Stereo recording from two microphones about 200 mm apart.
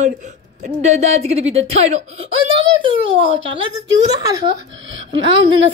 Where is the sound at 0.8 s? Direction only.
35° right (ahead or behind).